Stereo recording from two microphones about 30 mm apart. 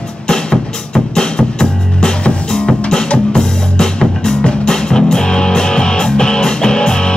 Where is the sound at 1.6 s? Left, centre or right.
Left.